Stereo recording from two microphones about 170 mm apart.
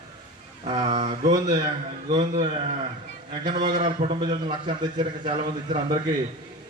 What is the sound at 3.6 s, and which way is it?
Speech, 25° right (ahead or behind).